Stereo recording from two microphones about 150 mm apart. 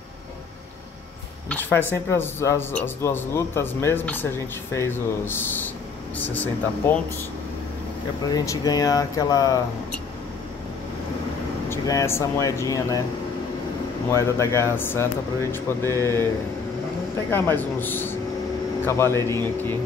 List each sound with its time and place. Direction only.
1.5 s speech: 15° left (ahead or behind)
8.3 s speech: 25° left (ahead or behind)
11.7 s speech: 20° left (ahead or behind)
14.1 s speech: 20° left (ahead or behind)
17.3 s speech: 15° left (ahead or behind)